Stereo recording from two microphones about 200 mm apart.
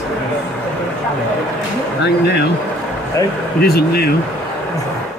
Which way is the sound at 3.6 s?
50° left (ahead or behind).